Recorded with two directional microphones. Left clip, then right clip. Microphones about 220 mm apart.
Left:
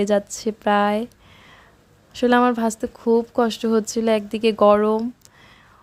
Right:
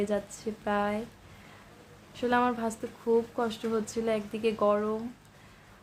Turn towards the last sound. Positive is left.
turn(degrees=45)  # may be behind; listen again after turning